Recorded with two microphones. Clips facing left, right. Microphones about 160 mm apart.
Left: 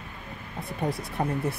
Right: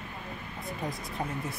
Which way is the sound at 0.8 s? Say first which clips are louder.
Left 7 dB; 65° left (ahead or behind).